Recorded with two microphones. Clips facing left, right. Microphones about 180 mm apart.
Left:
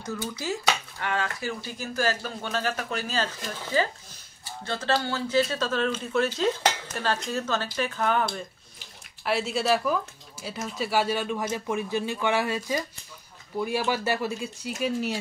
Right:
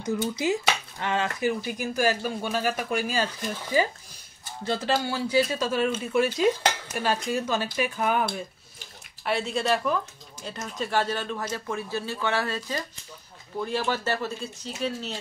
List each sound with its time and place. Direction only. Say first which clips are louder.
0.0 s speech: right 6 dB; 15° right (ahead or behind)
9.2 s speech: even; centre (ahead or behind)